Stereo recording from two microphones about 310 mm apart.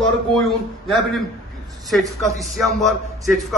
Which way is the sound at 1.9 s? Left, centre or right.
Centre.